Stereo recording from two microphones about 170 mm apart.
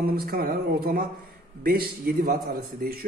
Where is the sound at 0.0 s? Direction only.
65° right (ahead or behind).